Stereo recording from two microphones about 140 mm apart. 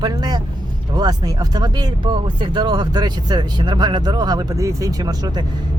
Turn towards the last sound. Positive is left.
turn(degrees=-25)  # may be behind; listen again after turning